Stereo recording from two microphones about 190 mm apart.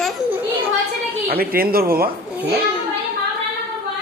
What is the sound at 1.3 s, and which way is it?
Speech, 50° right (ahead or behind).